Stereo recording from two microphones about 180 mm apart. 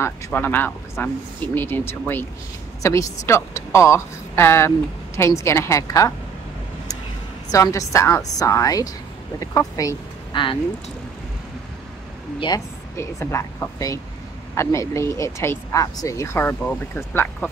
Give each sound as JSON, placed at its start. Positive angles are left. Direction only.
{"t": 0.0, "sound": "speech", "side_deg": 10}
{"t": 7.5, "sound": "a woman's voice", "side_deg": 20}
{"t": 12.4, "sound": "speech", "side_deg": 20}